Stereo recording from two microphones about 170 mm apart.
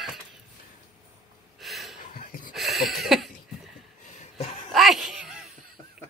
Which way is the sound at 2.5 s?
Centre (ahead or behind).